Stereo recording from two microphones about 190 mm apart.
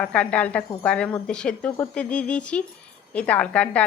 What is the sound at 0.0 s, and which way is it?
A woman's voice, 5° left (ahead or behind).